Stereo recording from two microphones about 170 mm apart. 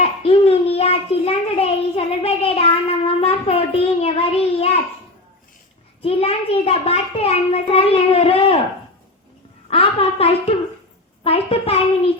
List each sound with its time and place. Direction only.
0.0 s a sound: 35° left (ahead or behind)
6.0 s a child's voice: 35° left (ahead or behind)
9.6 s a child's voice: 35° left (ahead or behind)